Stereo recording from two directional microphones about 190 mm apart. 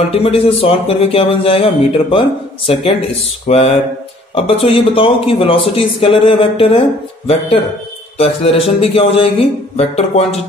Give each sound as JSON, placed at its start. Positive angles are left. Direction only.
{"t": 0.1, "sound": "speech", "side_deg": 30}
{"t": 8.2, "sound": "speech", "side_deg": 30}